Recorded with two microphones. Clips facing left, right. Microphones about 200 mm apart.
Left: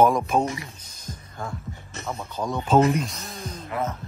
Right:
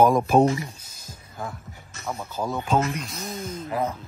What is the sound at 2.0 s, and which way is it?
Speech, 5° right (ahead or behind).